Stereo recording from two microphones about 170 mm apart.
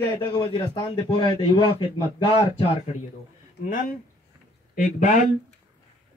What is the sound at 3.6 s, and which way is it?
Speech, 55° left (ahead or behind).